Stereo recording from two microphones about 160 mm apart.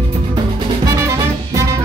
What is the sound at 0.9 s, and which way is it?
Music, 20° right (ahead or behind).